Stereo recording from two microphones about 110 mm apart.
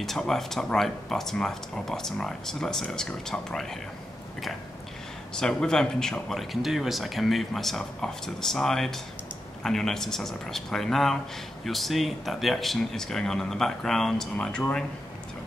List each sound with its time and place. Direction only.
0.0 s speech: 5° left (ahead or behind)
5.3 s speech: 5° left (ahead or behind)